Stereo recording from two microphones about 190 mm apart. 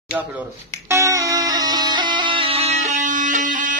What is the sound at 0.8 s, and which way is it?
Music, 15° right (ahead or behind).